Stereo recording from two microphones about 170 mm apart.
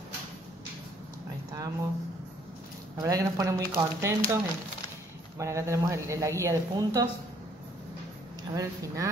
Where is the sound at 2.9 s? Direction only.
20° right (ahead or behind).